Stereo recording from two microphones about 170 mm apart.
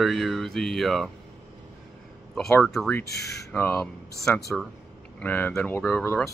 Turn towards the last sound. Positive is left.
turn(degrees=10)  # may be behind; listen again after turning